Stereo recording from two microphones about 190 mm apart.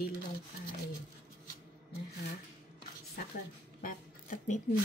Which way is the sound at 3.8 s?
45° left (ahead or behind).